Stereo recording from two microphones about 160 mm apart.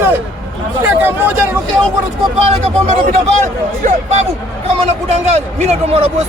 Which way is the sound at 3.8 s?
45° right (ahead or behind).